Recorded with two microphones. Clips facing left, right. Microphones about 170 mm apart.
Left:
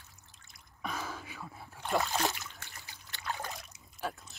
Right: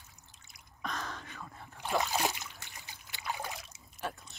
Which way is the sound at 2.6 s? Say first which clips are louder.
Even; 15° right (ahead or behind).